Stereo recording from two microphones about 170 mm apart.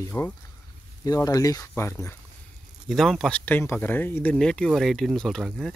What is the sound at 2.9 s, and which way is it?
Speech, centre (ahead or behind).